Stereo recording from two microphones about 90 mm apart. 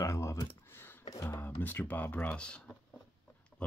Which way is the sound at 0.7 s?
25° left (ahead or behind).